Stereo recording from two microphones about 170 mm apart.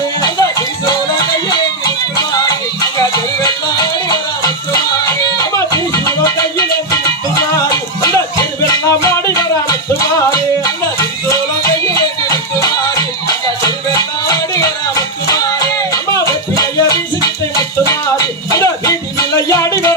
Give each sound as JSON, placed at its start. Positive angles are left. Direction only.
{"t": 1.5, "sound": "music", "side_deg": 20}
{"t": 4.1, "sound": "music", "side_deg": 20}
{"t": 8.6, "sound": "music", "side_deg": 20}
{"t": 12.5, "sound": "music", "side_deg": 20}